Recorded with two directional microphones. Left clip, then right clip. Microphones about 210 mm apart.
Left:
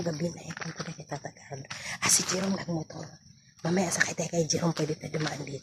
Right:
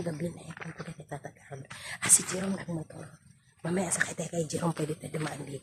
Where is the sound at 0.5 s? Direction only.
55° left (ahead or behind).